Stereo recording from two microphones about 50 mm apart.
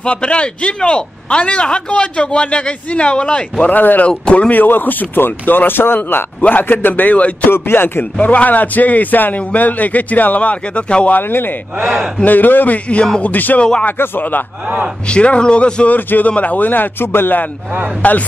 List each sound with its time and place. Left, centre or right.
0.0 s a man's voice: left
3.7 s a man's voice: left
4.1 s a man's voice: left
4.5 s a man's voice: left
7.5 s music: left
8.2 s a man's voice: left
11.1 s music: left
12.3 s a man's voice: left
13.2 s a man's voice: left
13.9 s music: left
15.0 s a man's voice: left
15.9 s a man's voice: left
18.0 s a man's voice: left